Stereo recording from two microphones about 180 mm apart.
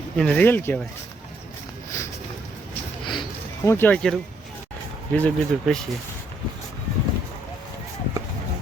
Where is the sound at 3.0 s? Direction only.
25° left (ahead or behind).